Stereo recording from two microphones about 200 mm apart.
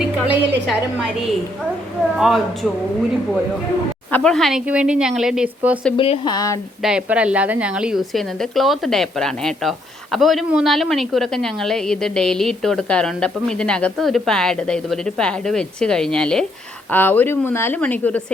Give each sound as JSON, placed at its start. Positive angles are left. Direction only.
{"t": 0.0, "sound": "a woman's voice", "side_deg": -5}
{"t": 4.1, "sound": "a woman's voice", "side_deg": 5}
{"t": 6.0, "sound": "speech", "side_deg": 25}
{"t": 6.8, "sound": "a woman's voice", "side_deg": -5}